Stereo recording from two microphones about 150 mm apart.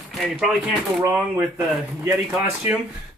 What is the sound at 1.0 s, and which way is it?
Speech, 10° right (ahead or behind).